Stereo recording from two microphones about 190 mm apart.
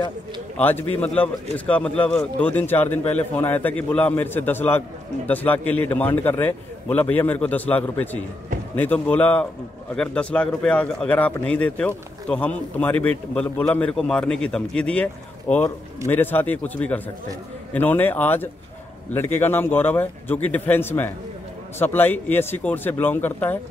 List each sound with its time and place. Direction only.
0.6 s speech: 10° left (ahead or behind)